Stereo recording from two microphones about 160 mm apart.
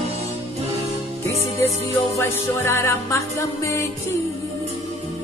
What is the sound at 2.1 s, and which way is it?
Music, 15° left (ahead or behind).